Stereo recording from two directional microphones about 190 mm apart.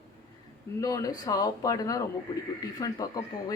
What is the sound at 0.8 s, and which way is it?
Speech, 20° left (ahead or behind).